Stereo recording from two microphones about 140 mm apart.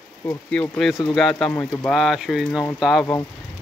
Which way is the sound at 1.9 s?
Centre (ahead or behind).